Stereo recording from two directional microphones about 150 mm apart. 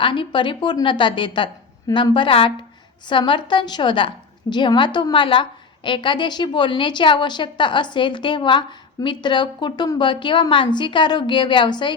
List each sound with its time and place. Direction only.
0.0 s a woman's voice: 35° left (ahead or behind)